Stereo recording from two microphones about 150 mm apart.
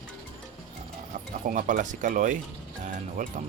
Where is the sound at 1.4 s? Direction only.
55° right (ahead or behind).